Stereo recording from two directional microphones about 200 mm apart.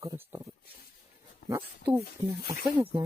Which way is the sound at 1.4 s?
60° left (ahead or behind).